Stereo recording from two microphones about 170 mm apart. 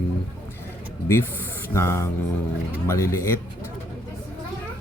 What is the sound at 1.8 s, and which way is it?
Speech, 15° left (ahead or behind).